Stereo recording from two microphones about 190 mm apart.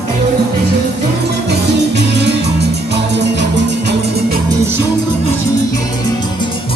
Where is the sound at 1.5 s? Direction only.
65° right (ahead or behind).